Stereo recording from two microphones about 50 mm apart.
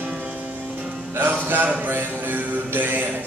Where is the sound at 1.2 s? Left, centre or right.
Right.